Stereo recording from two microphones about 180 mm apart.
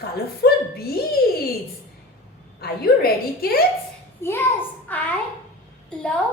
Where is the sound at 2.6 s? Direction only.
55° left (ahead or behind).